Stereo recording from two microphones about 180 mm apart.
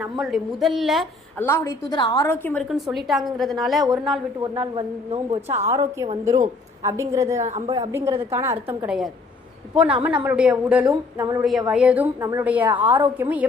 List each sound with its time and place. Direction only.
0.0 s a woman's voice: centre (ahead or behind)
1.4 s a woman's voice: 15° left (ahead or behind)
2.6 s a woman's voice: centre (ahead or behind)
4.4 s a woman's voice: 25° right (ahead or behind)
5.6 s a woman's voice: 15° right (ahead or behind)
7.4 s speech: 35° right (ahead or behind)
7.8 s a woman's voice: 15° right (ahead or behind)
8.9 s a woman's voice: centre (ahead or behind)
10.8 s a woman's voice: 20° right (ahead or behind)
11.7 s a woman's voice: 5° right (ahead or behind)